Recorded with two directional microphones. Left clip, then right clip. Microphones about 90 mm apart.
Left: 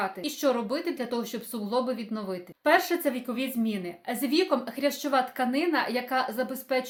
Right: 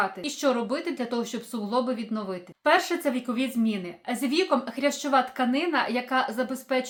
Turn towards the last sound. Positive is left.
turn(degrees=-30)  # may be behind; listen again after turning